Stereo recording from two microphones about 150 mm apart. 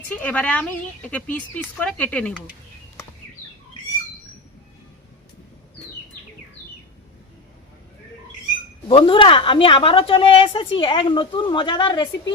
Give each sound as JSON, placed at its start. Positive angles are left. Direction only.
{"t": 0.1, "sound": "speech", "side_deg": 10}
{"t": 8.9, "sound": "a woman's voice", "side_deg": 35}